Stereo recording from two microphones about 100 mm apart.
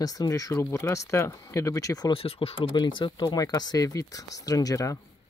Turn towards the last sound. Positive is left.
turn(degrees=30)  # may be behind; listen again after turning